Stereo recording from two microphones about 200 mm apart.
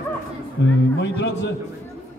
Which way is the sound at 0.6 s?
60° left (ahead or behind).